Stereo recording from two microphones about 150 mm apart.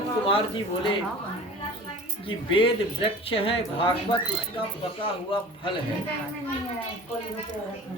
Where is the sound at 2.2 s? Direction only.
35° left (ahead or behind).